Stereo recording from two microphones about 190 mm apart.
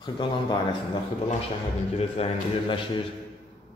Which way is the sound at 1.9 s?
30° left (ahead or behind).